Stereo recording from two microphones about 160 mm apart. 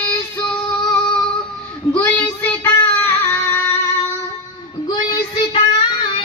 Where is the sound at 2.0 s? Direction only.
10° left (ahead or behind).